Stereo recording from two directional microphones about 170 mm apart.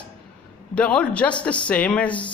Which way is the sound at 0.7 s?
10° left (ahead or behind).